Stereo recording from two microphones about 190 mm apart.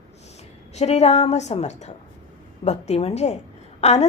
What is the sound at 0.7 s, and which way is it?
A woman's voice, 35° left (ahead or behind).